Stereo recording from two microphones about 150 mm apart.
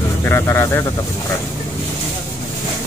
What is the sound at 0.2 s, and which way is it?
Speech, 15° left (ahead or behind).